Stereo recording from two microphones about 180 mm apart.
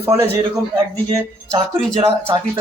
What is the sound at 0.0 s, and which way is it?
Speech, 15° right (ahead or behind).